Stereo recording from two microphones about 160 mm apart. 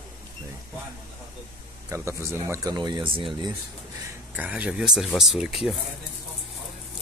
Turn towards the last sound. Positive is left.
turn(degrees=0)  # may be behind; listen again after turning